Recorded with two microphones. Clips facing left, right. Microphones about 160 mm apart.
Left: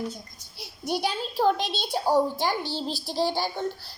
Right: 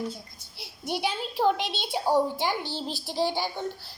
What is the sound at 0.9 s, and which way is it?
A woman's voice, 20° right (ahead or behind).